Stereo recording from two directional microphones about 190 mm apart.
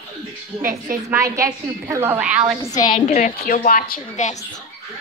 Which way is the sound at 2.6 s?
20° left (ahead or behind).